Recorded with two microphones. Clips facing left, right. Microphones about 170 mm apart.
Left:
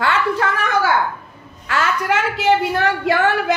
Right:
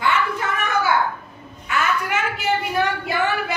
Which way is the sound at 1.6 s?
90° left.